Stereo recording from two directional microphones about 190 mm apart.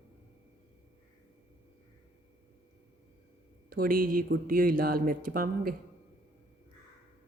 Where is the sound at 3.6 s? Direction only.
50° right (ahead or behind).